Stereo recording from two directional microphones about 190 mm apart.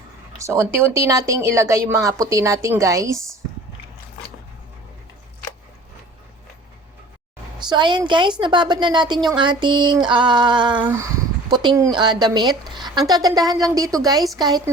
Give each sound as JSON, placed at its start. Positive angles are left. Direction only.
{"t": 0.3, "sound": "speech", "side_deg": -15}
{"t": 7.7, "sound": "a woman's voice", "side_deg": -25}